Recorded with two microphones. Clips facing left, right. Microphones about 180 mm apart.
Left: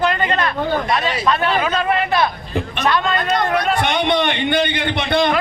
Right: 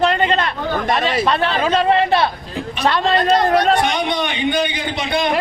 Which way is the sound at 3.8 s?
60° left (ahead or behind).